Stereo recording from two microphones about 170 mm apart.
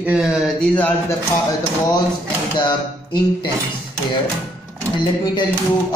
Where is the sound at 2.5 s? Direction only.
30° left (ahead or behind).